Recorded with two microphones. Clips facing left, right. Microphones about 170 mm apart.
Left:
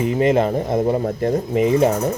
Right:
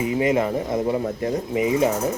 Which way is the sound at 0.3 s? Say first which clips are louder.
Left 4 dB; 30° left (ahead or behind).